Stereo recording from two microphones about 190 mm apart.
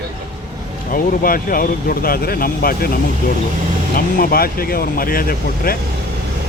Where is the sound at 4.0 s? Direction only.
50° left (ahead or behind).